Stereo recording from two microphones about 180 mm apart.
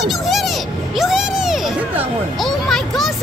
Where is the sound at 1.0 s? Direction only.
Centre (ahead or behind).